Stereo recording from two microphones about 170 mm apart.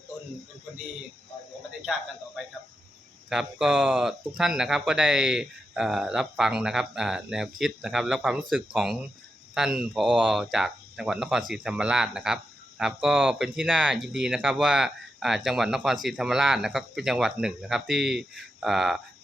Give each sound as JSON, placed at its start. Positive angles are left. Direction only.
{"t": 1.8, "sound": "speech", "side_deg": 0}